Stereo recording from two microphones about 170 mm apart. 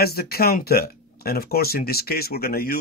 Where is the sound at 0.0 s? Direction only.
65° left (ahead or behind).